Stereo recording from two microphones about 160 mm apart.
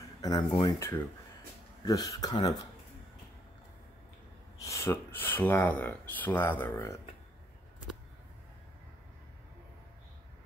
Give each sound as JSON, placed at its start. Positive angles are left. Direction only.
{"t": 0.2, "sound": "speech", "side_deg": 25}
{"t": 0.7, "sound": "speech", "side_deg": 15}
{"t": 4.6, "sound": "speech", "side_deg": 20}